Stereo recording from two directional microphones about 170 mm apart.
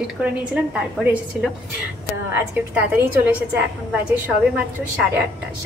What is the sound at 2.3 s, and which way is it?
A woman's voice, 10° right (ahead or behind).